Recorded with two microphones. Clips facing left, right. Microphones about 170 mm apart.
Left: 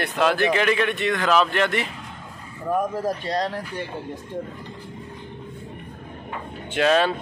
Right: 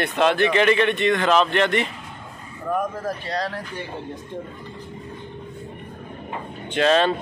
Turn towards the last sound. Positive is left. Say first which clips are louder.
# right 1 dB
turn(degrees=10)  # may be behind; listen again after turning